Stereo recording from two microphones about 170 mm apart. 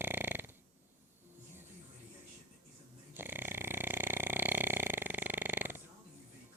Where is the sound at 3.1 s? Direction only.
10° right (ahead or behind).